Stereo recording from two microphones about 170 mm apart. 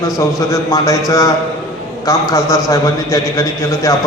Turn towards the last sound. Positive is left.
turn(degrees=20)  # may be behind; listen again after turning